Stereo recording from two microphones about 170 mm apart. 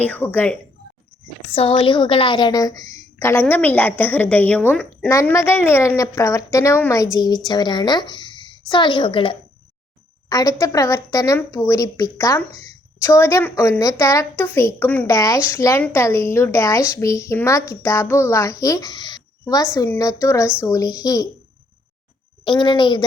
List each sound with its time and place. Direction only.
0.1 s a woman's voice: 10° left (ahead or behind)
1.5 s a woman's voice: 35° left (ahead or behind); by 15.0 s 10° left (ahead or behind)
15.0 s a woman's voice: 20° left (ahead or behind)
22.4 s a woman's voice: 30° left (ahead or behind)